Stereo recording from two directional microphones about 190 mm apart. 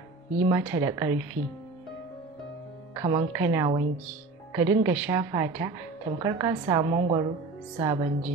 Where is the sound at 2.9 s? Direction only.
20° right (ahead or behind).